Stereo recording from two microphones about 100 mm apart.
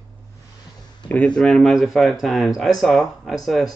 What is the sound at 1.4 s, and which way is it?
Speech, 5° left (ahead or behind).